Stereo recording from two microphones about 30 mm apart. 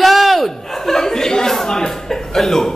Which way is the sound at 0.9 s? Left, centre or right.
Centre.